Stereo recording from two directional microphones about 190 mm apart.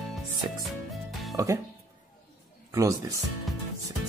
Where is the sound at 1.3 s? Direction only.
15° right (ahead or behind).